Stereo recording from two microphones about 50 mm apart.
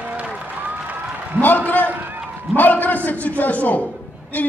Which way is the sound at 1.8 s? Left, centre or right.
Right.